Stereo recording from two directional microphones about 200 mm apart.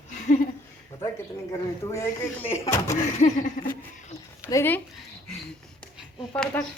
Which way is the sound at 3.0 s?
40° left (ahead or behind).